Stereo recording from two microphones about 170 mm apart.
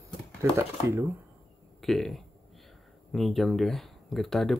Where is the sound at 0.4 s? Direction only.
15° right (ahead or behind).